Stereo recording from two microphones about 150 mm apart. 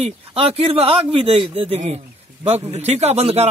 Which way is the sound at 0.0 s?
40° right (ahead or behind).